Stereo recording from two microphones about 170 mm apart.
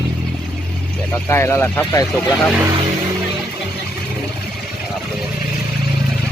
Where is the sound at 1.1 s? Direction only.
15° left (ahead or behind).